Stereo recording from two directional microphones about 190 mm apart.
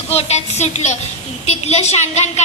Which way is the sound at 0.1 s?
35° left (ahead or behind).